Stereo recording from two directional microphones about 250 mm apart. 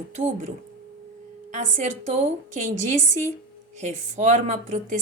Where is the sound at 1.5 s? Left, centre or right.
Right.